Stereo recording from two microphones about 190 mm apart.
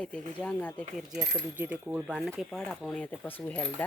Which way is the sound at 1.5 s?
10° right (ahead or behind).